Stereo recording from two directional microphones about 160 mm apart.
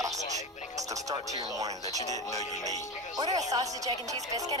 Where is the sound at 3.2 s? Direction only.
25° right (ahead or behind).